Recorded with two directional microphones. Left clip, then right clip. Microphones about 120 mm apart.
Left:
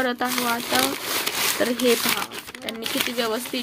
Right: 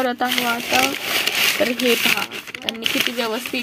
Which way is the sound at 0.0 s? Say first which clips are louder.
Right 3 dB; 35° right (ahead or behind).